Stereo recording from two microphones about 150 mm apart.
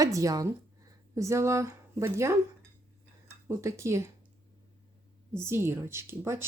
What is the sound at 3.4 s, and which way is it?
Speech, 20° right (ahead or behind).